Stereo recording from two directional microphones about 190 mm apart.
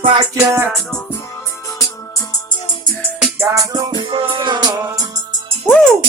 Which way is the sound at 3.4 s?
15° right (ahead or behind).